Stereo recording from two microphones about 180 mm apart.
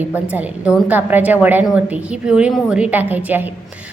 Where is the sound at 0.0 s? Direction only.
10° right (ahead or behind).